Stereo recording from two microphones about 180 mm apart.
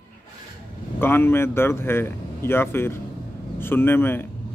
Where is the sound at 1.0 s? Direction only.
10° left (ahead or behind).